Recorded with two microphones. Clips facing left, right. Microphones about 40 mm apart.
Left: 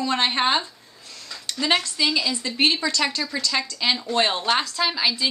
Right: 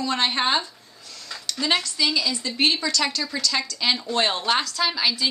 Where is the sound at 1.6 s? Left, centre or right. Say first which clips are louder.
Left 1 dB; centre.